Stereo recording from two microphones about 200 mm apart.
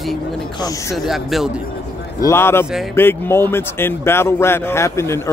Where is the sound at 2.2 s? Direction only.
10° left (ahead or behind).